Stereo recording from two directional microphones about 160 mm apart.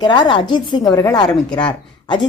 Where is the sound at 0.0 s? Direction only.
30° left (ahead or behind).